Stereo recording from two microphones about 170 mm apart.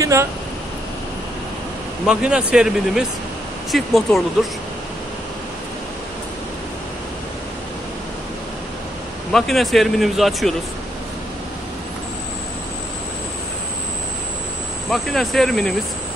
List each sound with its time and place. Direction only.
0.0 s speech: 15° right (ahead or behind)
2.0 s speech: 5° right (ahead or behind)
9.3 s speech: centre (ahead or behind)
14.9 s speech: centre (ahead or behind)